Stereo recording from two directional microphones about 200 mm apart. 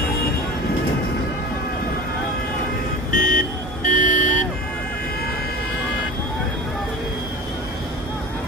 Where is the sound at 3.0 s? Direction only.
40° left (ahead or behind).